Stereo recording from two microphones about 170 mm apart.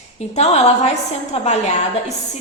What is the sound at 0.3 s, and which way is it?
Speech, 40° left (ahead or behind).